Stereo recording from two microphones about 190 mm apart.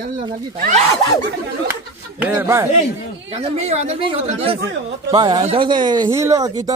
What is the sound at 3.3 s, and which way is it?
Speech, 35° right (ahead or behind).